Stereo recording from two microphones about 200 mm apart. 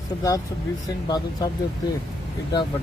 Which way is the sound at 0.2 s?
20° left (ahead or behind).